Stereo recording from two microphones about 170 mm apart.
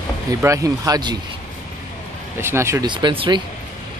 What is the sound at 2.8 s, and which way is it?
Speech, 30° right (ahead or behind).